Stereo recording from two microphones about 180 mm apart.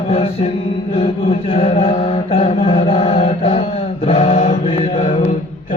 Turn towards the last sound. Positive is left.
turn(degrees=30)  # may be behind; listen again after turning